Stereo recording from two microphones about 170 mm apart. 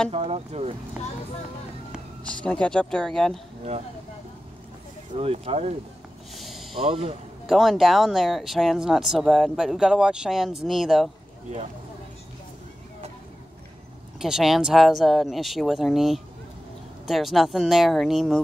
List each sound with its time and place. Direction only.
0.1 s speech: 35° right (ahead or behind)
2.2 s speech: 5° left (ahead or behind)
5.1 s speech: 35° right (ahead or behind)
6.3 s snort: centre (ahead or behind)
6.8 s speech: 35° right (ahead or behind)
7.4 s speech: centre (ahead or behind)
14.2 s speech: centre (ahead or behind)